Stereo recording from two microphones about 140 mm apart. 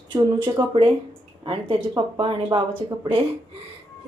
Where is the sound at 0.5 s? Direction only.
40° right (ahead or behind).